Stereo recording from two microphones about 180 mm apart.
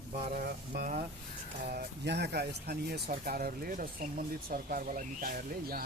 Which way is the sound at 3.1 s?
50° right (ahead or behind).